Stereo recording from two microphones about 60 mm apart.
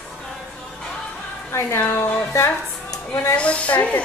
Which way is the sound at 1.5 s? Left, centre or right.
Left.